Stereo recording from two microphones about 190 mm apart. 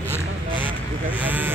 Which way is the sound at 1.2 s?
10° right (ahead or behind).